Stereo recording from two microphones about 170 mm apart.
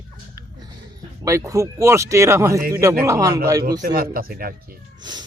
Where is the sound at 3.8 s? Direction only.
60° right (ahead or behind).